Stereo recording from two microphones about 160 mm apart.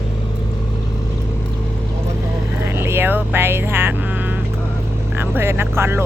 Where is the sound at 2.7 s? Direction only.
15° right (ahead or behind).